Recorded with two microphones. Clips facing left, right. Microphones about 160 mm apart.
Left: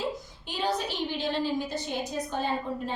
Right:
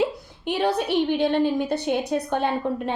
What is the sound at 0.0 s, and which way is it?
A woman's voice, 65° right (ahead or behind).